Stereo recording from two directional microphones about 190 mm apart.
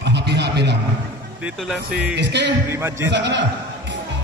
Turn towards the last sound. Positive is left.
turn(degrees=-65)  # may be behind; listen again after turning